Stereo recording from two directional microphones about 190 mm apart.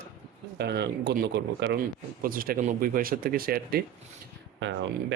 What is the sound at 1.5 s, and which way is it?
Speech, 70° right (ahead or behind).